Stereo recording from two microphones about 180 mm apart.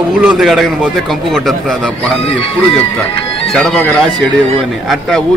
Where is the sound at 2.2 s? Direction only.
30° left (ahead or behind).